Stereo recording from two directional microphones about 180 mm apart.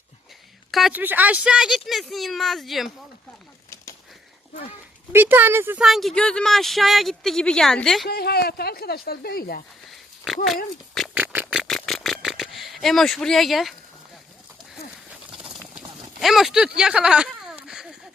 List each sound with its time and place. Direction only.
0.7 s speech: centre (ahead or behind)
5.1 s speech: 10° right (ahead or behind)
8.0 s speech: 60° left (ahead or behind)
9.9 s a sound: centre (ahead or behind)
10.9 s pig: 5° right (ahead or behind)
11.7 s a sound: centre (ahead or behind)
15.3 s horse: 5° right (ahead or behind)
16.2 s speech: centre (ahead or behind)